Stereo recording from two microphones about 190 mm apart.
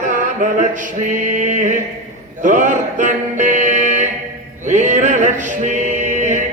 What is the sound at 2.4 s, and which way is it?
Music, 40° right (ahead or behind).